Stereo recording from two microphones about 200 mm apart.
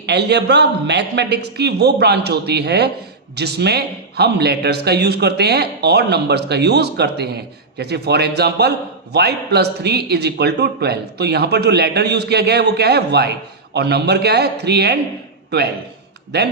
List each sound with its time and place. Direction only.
0.0 s speech: 55° right (ahead or behind)